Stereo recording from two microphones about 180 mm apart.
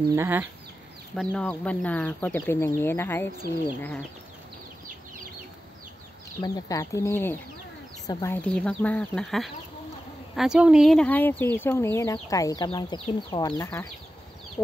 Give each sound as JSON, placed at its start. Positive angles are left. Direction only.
{"t": 0.1, "sound": "speech", "side_deg": -15}
{"t": 1.2, "sound": "speech", "side_deg": 5}
{"t": 6.4, "sound": "speech", "side_deg": 20}
{"t": 8.5, "sound": "speech", "side_deg": 5}